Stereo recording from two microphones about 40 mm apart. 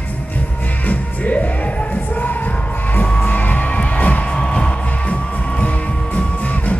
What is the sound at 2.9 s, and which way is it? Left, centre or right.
Music, left.